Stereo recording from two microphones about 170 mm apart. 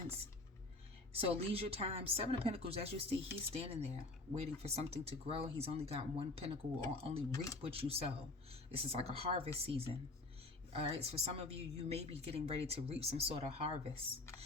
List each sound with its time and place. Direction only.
1.1 s a woman's voice: 35° right (ahead or behind)
7.3 s speech: 20° left (ahead or behind)
7.6 s a woman's voice: 35° right (ahead or behind)